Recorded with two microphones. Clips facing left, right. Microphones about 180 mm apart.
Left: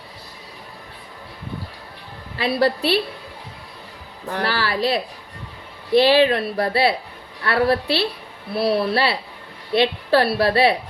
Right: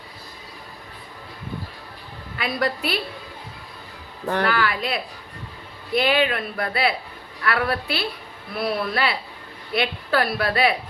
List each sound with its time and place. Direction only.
2.4 s speech: 30° left (ahead or behind)
4.4 s a woman's voice: 30° left (ahead or behind)